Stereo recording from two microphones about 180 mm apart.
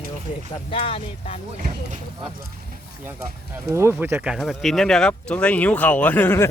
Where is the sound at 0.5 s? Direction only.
30° left (ahead or behind).